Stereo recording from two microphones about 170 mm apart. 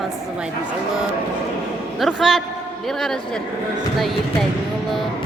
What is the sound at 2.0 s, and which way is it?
Speech, centre (ahead or behind).